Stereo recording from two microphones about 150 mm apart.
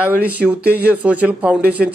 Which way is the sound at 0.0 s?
10° right (ahead or behind).